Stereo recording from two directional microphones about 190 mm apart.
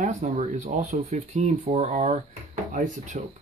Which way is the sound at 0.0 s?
40° right (ahead or behind).